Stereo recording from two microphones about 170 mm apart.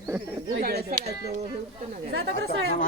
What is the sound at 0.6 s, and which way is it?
Speech, 65° right (ahead or behind).